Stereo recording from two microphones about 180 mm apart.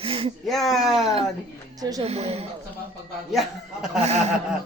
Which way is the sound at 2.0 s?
35° right (ahead or behind).